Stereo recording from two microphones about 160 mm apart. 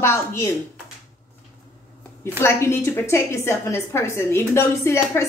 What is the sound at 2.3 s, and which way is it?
A woman's voice, 15° left (ahead or behind).